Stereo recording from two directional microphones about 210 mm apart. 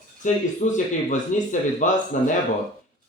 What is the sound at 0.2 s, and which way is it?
Speech, 35° left (ahead or behind).